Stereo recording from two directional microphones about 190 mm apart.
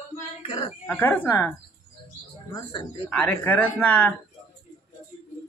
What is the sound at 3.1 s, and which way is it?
Speech, 5° left (ahead or behind).